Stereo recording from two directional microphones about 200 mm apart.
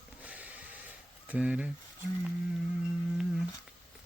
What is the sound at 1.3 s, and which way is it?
Speech, 5° right (ahead or behind).